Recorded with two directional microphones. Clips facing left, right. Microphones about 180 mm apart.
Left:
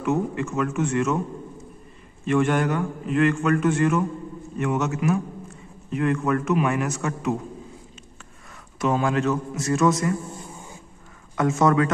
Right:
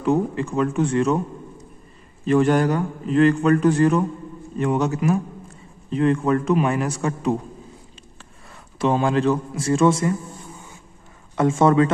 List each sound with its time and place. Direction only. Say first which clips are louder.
0.0 s a man's voice: right 3 dB; 30° right (ahead or behind)
2.2 s a man's voice: right 4 dB; 35° right (ahead or behind)
8.7 s a man's voice: right 3 dB; 30° right (ahead or behind)
11.3 s a man's voice: right 3 dB; 30° right (ahead or behind)